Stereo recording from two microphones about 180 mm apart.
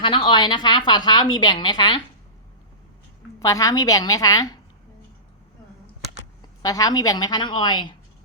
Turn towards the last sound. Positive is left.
turn(degrees=25)  # may be behind; listen again after turning